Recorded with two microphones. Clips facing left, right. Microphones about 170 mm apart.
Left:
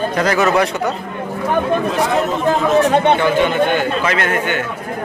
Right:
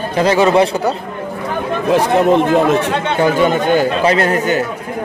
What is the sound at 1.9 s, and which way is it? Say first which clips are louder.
Speech: right 6 dB; 60° right (ahead or behind).